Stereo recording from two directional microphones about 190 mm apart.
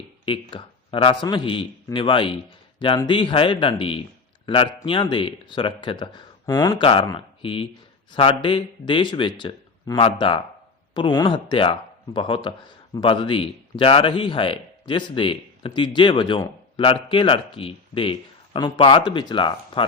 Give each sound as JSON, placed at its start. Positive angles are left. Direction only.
{"t": 0.3, "sound": "speech", "side_deg": 30}